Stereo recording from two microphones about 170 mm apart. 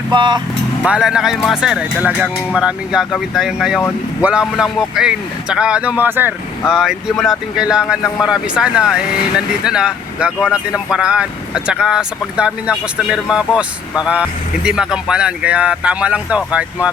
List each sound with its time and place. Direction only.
0.1 s speech: 25° right (ahead or behind)
0.9 s speech: 5° right (ahead or behind)